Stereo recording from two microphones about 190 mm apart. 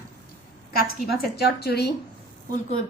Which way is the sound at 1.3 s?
55° left (ahead or behind).